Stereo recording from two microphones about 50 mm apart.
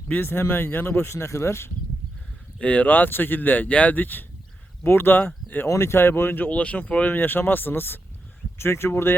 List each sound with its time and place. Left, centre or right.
0.1 s speech: left
2.6 s speech: left
4.9 s speech: left
5.6 s speech: left
6.5 s speech: left
7.1 s speech: left
8.5 s speech: left